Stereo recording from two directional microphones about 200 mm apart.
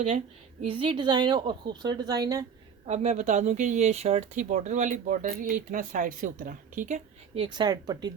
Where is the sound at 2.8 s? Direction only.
35° right (ahead or behind).